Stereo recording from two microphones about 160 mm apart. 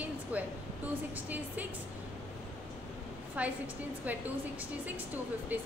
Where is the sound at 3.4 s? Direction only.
10° right (ahead or behind).